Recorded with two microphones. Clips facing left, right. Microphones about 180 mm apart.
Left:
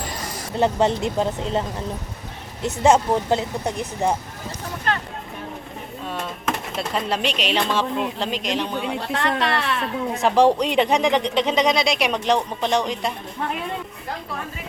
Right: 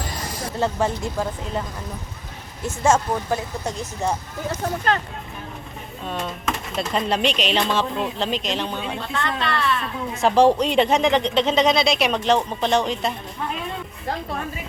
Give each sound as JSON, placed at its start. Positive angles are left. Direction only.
{"t": 0.6, "sound": "speech", "side_deg": 20}
{"t": 2.8, "sound": "speech", "side_deg": 20}
{"t": 6.7, "sound": "speech", "side_deg": 5}
{"t": 9.0, "sound": "a woman's voice", "side_deg": 75}
{"t": 10.3, "sound": "speech", "side_deg": 15}